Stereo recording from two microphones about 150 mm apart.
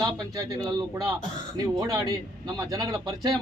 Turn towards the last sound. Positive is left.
turn(degrees=-25)  # may be behind; listen again after turning